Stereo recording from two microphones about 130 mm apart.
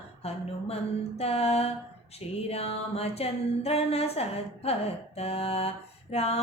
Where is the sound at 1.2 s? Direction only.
50° left (ahead or behind).